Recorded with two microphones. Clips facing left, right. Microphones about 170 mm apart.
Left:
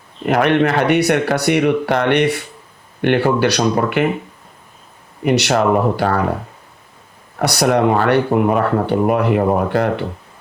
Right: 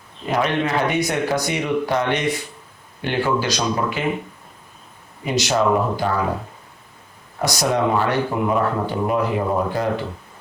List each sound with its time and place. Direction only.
0.3 s speech: 65° left (ahead or behind)
5.2 s speech: 65° left (ahead or behind)
7.3 s speech: 65° left (ahead or behind)